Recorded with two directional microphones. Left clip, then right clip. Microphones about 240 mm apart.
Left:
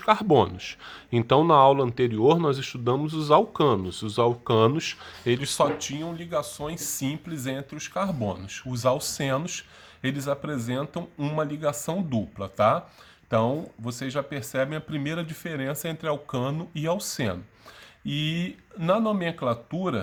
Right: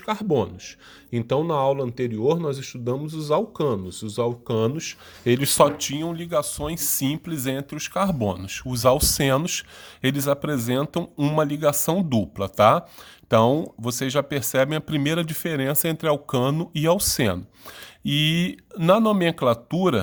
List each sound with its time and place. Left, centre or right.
0.0 s speech: centre
5.2 s speech: right